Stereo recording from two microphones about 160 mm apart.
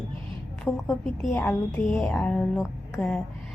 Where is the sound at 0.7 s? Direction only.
15° left (ahead or behind).